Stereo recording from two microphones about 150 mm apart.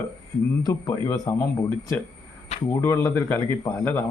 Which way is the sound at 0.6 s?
20° left (ahead or behind).